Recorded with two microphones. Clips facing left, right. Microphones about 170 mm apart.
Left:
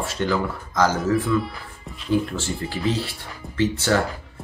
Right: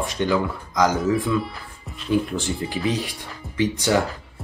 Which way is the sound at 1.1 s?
Centre (ahead or behind).